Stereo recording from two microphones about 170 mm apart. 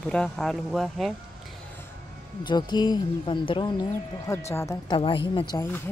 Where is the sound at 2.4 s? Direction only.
25° left (ahead or behind).